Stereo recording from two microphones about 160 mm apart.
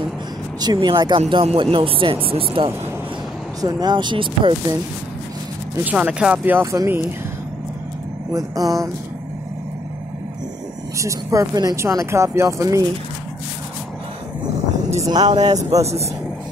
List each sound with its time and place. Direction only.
0.6 s speech: 25° right (ahead or behind)
1.2 s speech: 40° right (ahead or behind)
5.9 s speech: 10° right (ahead or behind)
8.3 s speech: 20° right (ahead or behind)
11.0 s speech: 20° right (ahead or behind)
15.0 s speech: 25° right (ahead or behind)
15.4 s speech: 45° right (ahead or behind)